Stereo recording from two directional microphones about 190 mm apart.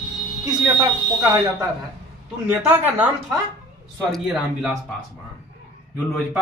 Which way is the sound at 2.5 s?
10° right (ahead or behind).